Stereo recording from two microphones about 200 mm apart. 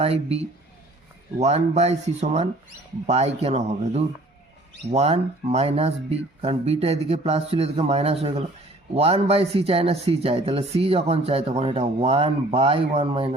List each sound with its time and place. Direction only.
0.0 s speech: 30° right (ahead or behind)